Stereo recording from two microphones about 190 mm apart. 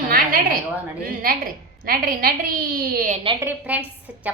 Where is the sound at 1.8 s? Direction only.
50° right (ahead or behind).